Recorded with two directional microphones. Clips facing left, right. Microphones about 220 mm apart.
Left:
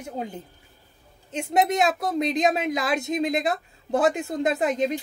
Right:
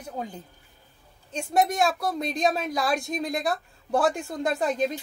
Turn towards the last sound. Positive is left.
turn(degrees=20)  # may be behind; listen again after turning